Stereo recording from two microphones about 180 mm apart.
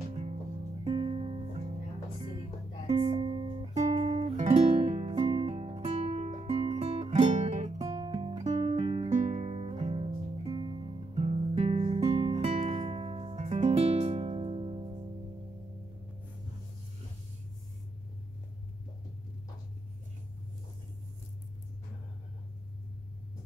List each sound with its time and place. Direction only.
0.1 s music: 35° right (ahead or behind)
2.9 s music: 30° right (ahead or behind)
7.8 s music: 25° right (ahead or behind)
8.5 s guitar: 35° right (ahead or behind)